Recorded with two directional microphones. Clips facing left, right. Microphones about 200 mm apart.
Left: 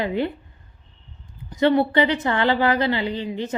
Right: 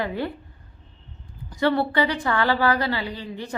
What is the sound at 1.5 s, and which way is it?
Speech, 20° left (ahead or behind).